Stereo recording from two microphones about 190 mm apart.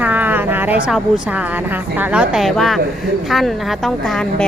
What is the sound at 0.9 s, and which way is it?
Speech, 5° right (ahead or behind).